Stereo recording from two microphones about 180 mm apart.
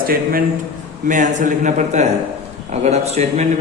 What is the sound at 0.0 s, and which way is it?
Speech, 55° right (ahead or behind).